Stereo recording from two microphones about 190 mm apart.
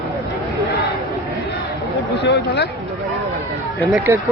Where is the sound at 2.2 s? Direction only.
60° left (ahead or behind).